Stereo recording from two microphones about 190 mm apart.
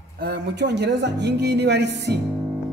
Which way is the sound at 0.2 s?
60° right (ahead or behind).